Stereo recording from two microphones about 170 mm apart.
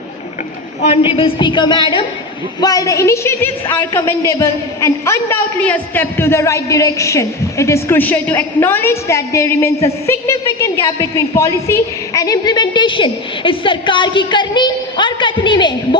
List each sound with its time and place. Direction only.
0.8 s a woman's voice: 35° left (ahead or behind)